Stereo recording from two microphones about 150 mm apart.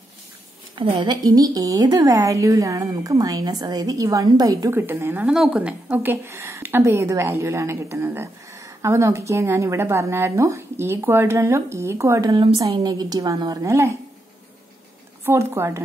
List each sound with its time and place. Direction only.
0.7 s a woman's voice: 30° right (ahead or behind)
15.2 s a woman's voice: 15° right (ahead or behind)